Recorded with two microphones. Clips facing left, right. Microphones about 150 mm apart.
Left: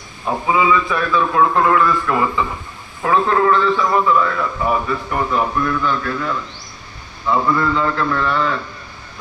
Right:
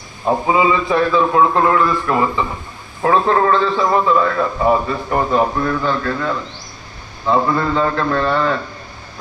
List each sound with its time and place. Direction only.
0.3 s a man's voice: 30° right (ahead or behind)